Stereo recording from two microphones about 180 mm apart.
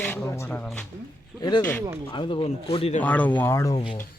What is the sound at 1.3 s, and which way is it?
Speech, 20° left (ahead or behind).